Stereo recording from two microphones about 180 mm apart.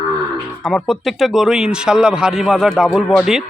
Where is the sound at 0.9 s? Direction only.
Centre (ahead or behind).